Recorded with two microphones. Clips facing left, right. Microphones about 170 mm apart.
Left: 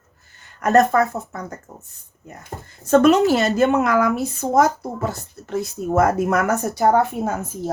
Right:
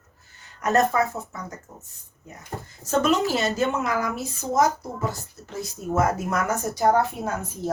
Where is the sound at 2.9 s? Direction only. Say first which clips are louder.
Left 8 dB; 65° left (ahead or behind).